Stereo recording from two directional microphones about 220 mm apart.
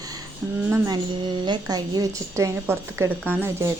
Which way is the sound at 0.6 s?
15° right (ahead or behind).